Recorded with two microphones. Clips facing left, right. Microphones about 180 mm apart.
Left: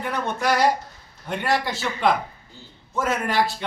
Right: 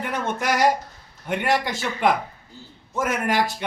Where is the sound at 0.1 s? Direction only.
15° right (ahead or behind).